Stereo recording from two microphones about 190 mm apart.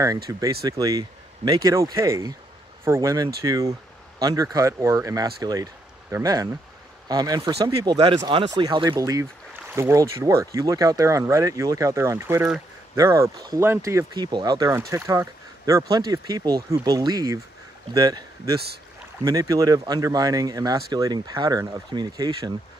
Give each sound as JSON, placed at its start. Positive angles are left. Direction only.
{"t": 0.0, "sound": "speech", "side_deg": -15}